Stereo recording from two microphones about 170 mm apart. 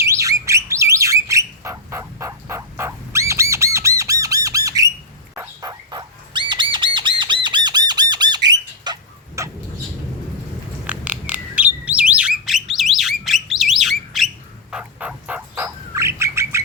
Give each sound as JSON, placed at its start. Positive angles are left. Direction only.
{"t": 0.0, "sound": "bird", "side_deg": -20}
{"t": 5.3, "sound": "dog", "side_deg": -20}
{"t": 6.5, "sound": "squawk", "side_deg": -30}
{"t": 10.8, "sound": "bird", "side_deg": -10}